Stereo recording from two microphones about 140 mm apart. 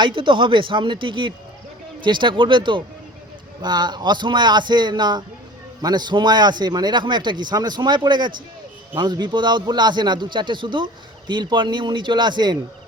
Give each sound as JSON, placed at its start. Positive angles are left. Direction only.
{"t": 0.0, "sound": "speech", "side_deg": -35}